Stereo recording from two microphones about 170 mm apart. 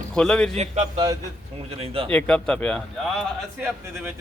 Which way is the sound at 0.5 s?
40° right (ahead or behind).